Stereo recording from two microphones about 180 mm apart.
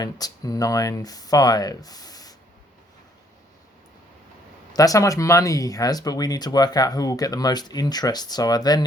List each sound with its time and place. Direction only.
0.0 s speech: 20° left (ahead or behind)
4.7 s speech: 20° left (ahead or behind)